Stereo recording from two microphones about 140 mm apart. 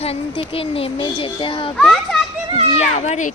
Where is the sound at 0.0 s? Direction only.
45° left (ahead or behind).